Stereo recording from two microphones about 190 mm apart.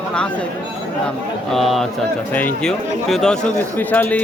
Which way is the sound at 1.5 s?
Centre (ahead or behind).